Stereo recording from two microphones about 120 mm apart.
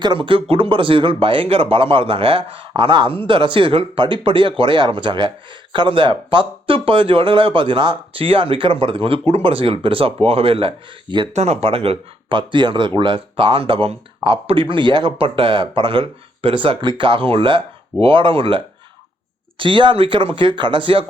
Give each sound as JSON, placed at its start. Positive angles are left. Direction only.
{"t": 0.0, "sound": "speech", "side_deg": -45}
{"t": 11.3, "sound": "speech", "side_deg": -65}